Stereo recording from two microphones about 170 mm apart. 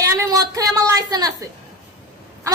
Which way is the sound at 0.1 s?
20° right (ahead or behind).